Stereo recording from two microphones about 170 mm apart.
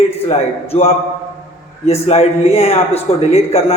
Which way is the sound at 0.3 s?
40° left (ahead or behind).